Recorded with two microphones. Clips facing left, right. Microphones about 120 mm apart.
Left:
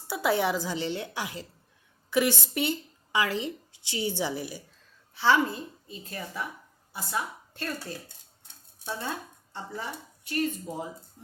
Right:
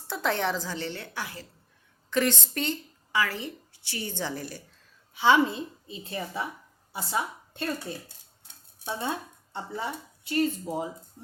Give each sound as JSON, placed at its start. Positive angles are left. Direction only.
{"t": 0.1, "sound": "a woman's voice", "side_deg": 10}
{"t": 5.1, "sound": "a woman's voice", "side_deg": -20}